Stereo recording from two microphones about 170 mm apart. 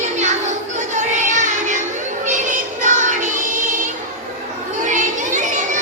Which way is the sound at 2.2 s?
50° right (ahead or behind).